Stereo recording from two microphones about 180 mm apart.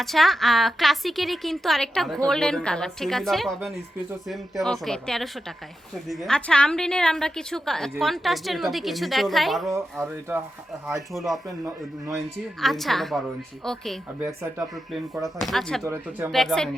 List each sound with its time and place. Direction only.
0.0 s speech: centre (ahead or behind)
9.6 s speech: 15° right (ahead or behind)
11.1 s speech: centre (ahead or behind)
11.4 s speech: 15° right (ahead or behind)
12.1 s speech: centre (ahead or behind)
15.1 s speech: centre (ahead or behind)
15.8 s speech: 15° right (ahead or behind)
16.3 s speech: centre (ahead or behind)